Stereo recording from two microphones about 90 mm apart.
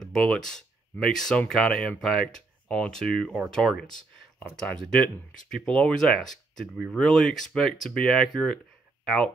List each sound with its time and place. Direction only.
0.0 s speech: 5° left (ahead or behind)